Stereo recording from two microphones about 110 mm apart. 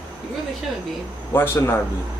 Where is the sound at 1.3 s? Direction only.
20° left (ahead or behind).